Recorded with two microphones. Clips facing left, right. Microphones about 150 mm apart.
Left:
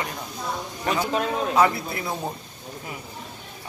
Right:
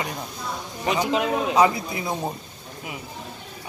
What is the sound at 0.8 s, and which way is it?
Speech, 15° right (ahead or behind).